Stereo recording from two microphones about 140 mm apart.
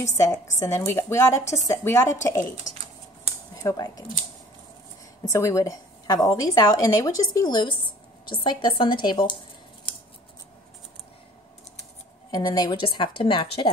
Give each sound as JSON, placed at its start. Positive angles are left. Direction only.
{"t": 0.0, "sound": "a woman's voice", "side_deg": 25}
{"t": 3.6, "sound": "a woman's voice", "side_deg": 25}
{"t": 5.3, "sound": "a woman's voice", "side_deg": 20}
{"t": 12.3, "sound": "a woman's voice", "side_deg": 30}